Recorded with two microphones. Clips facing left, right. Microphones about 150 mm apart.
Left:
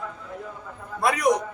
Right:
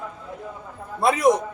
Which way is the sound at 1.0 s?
25° right (ahead or behind).